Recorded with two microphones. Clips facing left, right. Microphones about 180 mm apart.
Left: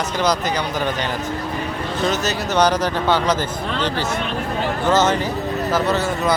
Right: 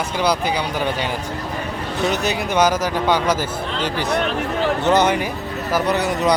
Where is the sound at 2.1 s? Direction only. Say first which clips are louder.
Right 1 dB; 10° right (ahead or behind).